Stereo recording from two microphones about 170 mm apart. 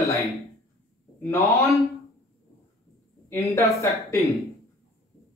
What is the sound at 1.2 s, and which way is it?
Speech, 10° left (ahead or behind).